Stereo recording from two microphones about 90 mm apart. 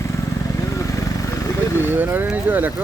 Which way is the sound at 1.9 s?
20° right (ahead or behind).